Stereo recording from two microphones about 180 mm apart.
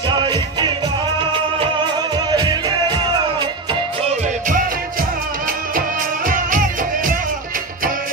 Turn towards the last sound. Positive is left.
turn(degrees=-50)  # may be behind; listen again after turning